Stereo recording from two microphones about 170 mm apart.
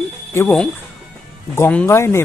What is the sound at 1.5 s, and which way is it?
Speech, 10° left (ahead or behind).